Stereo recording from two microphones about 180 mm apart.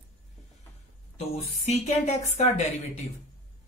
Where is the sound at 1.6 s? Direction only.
40° left (ahead or behind).